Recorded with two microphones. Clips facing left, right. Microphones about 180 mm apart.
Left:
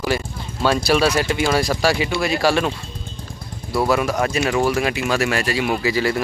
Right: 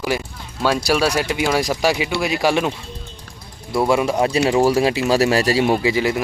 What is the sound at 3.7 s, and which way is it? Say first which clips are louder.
Speech: right 2 dB; 20° right (ahead or behind).